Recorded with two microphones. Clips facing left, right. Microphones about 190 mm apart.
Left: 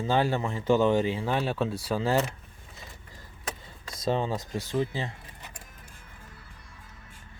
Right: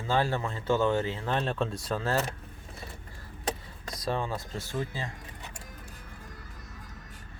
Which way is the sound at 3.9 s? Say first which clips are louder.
Left 4 dB; 20° left (ahead or behind).